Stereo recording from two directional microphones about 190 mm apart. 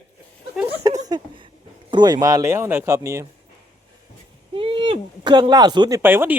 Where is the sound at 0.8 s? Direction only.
20° right (ahead or behind).